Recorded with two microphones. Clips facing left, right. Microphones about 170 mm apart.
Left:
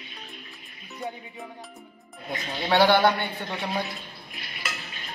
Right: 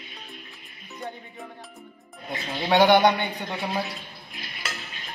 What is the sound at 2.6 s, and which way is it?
Speech, 15° right (ahead or behind).